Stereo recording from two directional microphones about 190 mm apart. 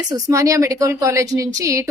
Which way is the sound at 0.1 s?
15° right (ahead or behind).